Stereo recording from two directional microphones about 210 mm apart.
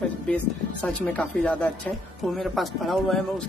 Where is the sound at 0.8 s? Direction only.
5° left (ahead or behind).